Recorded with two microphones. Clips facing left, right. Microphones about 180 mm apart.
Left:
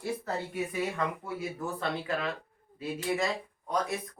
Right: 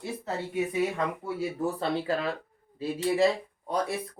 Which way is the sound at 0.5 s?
25° right (ahead or behind).